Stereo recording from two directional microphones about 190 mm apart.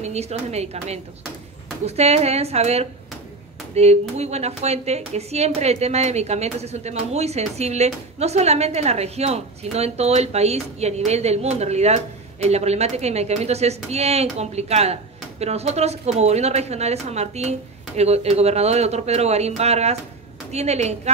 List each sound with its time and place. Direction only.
0.0 s speech: 35° right (ahead or behind)